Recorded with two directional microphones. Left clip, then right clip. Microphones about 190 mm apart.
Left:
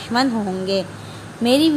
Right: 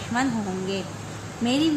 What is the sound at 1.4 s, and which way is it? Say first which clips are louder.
Speech: left 8 dB; 50° left (ahead or behind).